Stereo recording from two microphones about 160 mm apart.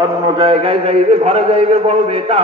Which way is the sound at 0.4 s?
35° right (ahead or behind).